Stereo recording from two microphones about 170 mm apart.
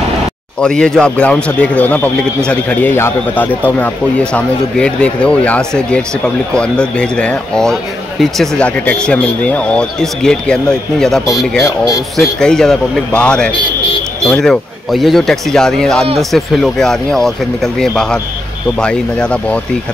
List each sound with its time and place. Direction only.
0.6 s speech: 5° left (ahead or behind)
11.6 s speech: 20° left (ahead or behind)
12.2 s speech: 5° left (ahead or behind)